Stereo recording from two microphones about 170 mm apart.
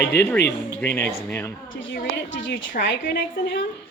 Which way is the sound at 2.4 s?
90° left.